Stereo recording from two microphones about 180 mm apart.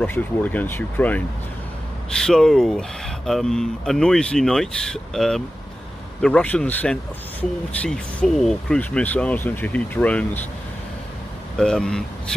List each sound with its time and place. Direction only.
0.0 s speech: 10° left (ahead or behind)
11.5 s speech: 5° left (ahead or behind)